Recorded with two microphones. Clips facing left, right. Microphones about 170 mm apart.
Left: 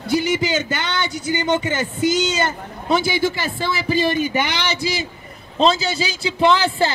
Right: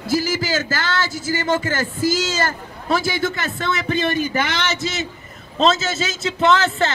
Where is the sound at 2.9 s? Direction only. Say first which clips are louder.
Left 3 dB; 25° left (ahead or behind).